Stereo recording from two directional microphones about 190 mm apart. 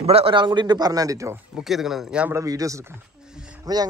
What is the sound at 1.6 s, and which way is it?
Speech, centre (ahead or behind).